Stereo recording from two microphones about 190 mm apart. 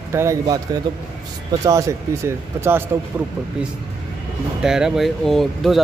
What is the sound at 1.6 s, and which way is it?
Speech, 15° right (ahead or behind).